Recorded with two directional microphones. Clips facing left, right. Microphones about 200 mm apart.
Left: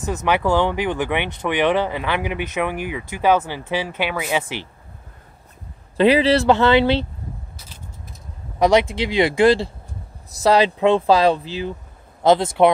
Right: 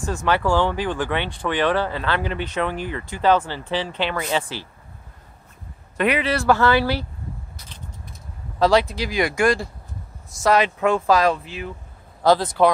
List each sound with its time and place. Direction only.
0.0 s speech: 20° left (ahead or behind)
5.9 s speech: 30° left (ahead or behind)
8.5 s speech: 20° left (ahead or behind)